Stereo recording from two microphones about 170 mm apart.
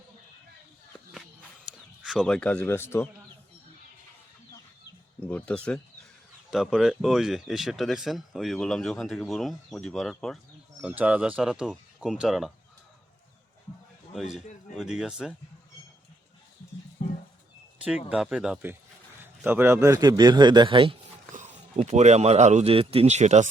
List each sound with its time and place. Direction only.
2.0 s speech: 5° left (ahead or behind)
5.2 s speech: 5° left (ahead or behind)
14.3 s speech: centre (ahead or behind)
18.1 s a man's voice: 5° right (ahead or behind); by 20.9 s 30° right (ahead or behind)
21.3 s speech: 40° right (ahead or behind)